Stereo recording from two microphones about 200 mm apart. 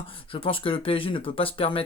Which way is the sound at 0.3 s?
25° left (ahead or behind).